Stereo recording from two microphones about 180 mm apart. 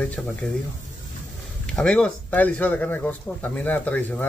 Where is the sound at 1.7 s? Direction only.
5° left (ahead or behind).